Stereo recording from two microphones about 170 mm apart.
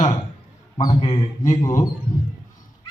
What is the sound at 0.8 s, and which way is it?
Speech, 30° left (ahead or behind).